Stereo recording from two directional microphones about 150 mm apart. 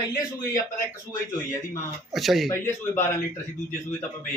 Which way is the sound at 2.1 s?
Centre (ahead or behind).